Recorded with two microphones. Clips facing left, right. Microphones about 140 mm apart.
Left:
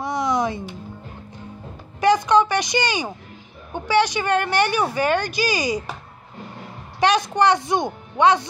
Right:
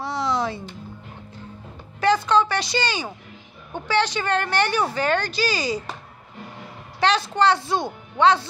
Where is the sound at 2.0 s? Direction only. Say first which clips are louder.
Left 3 dB; 15° left (ahead or behind).